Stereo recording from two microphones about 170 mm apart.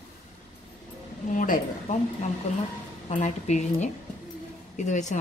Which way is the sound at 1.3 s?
50° left (ahead or behind).